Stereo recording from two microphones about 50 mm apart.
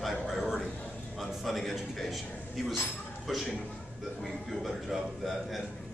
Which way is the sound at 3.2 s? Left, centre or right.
Centre.